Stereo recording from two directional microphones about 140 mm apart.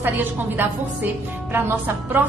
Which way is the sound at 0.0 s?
15° right (ahead or behind).